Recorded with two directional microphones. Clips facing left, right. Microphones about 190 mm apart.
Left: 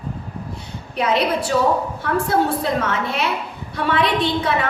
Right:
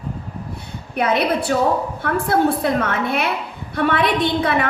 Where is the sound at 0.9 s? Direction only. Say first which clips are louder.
Right 1 dB; 55° right (ahead or behind).